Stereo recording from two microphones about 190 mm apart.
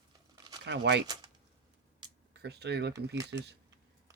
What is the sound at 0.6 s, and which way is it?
Speech, 65° right (ahead or behind).